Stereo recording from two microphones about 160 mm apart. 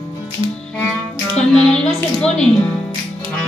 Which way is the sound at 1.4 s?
5° left (ahead or behind).